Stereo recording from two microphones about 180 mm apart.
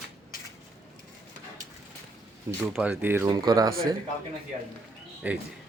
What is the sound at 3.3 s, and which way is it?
Speech, 20° right (ahead or behind).